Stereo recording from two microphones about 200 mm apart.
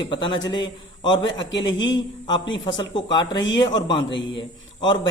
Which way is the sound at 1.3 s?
65° left (ahead or behind).